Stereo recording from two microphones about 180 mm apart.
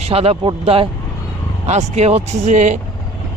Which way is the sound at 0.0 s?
35° right (ahead or behind).